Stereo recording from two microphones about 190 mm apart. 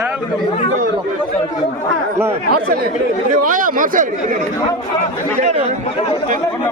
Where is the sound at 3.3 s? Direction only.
45° right (ahead or behind).